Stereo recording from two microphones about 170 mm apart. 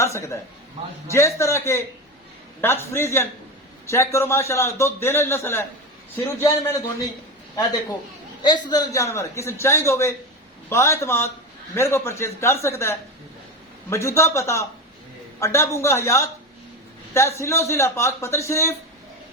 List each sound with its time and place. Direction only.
0.0 s a man's voice: 15° left (ahead or behind)